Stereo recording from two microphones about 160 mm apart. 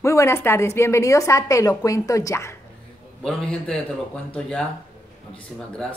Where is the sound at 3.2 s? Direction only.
5° left (ahead or behind).